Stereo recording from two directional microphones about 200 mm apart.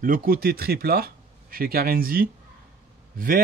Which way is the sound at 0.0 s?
45° right (ahead or behind).